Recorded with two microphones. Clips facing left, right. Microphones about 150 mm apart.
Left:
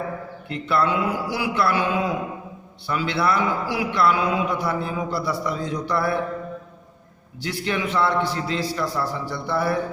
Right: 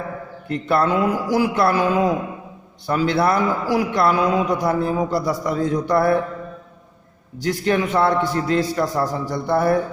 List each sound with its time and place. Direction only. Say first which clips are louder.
0.4 s a man's voice: right 3 dB; 45° right (ahead or behind)
7.4 s a man's voice: right 6 dB; 45° right (ahead or behind)